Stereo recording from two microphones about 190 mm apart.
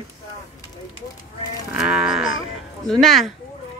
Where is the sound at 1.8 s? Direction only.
Centre (ahead or behind).